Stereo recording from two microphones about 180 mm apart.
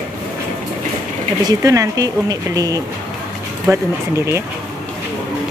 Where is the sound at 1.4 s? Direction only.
20° right (ahead or behind).